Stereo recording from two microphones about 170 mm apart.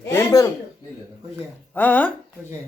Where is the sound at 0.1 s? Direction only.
15° left (ahead or behind).